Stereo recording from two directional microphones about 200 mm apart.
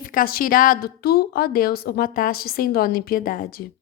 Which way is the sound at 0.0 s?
45° left (ahead or behind).